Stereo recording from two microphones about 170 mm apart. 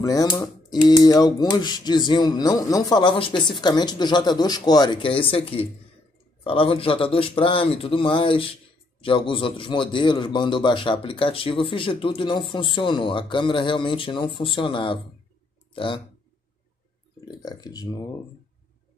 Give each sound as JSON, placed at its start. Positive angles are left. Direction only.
{"t": 0.0, "sound": "a man's voice", "side_deg": 20}
{"t": 17.2, "sound": "speech", "side_deg": 20}